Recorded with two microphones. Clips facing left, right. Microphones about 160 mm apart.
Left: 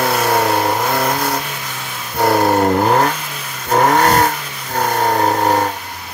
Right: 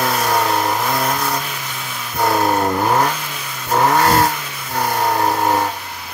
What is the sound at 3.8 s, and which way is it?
Vehicle, 40° left (ahead or behind).